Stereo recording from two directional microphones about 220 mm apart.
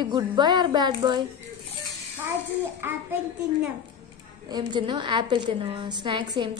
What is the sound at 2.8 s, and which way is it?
Speech, 10° right (ahead or behind).